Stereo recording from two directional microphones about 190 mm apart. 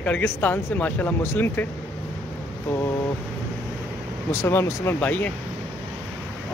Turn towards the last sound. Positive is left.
turn(degrees=10)  # may be behind; listen again after turning